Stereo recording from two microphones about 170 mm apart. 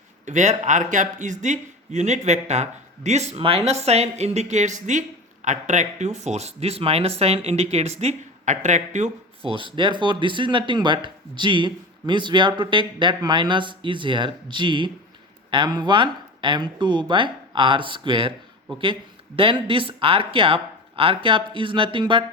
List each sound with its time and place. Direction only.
0.3 s speech: 45° right (ahead or behind)
19.4 s speech: 30° right (ahead or behind)